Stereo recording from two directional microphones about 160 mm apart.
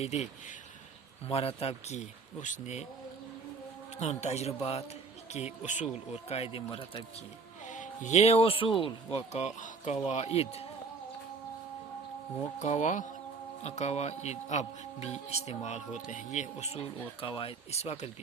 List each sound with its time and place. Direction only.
0.0 s speech: 45° left (ahead or behind)
1.3 s speech: 40° left (ahead or behind)
4.0 s speech: 45° left (ahead or behind)
7.7 s speech: 50° left (ahead or behind)
12.5 s speech: 50° left (ahead or behind)